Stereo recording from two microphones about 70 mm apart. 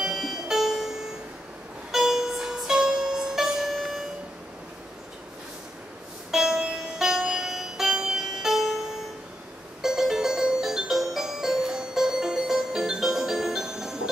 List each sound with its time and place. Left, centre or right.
0.0 s music: centre
6.3 s music: centre
9.8 s music: centre